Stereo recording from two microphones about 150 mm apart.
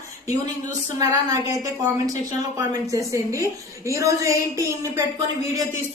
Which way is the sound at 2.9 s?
20° right (ahead or behind).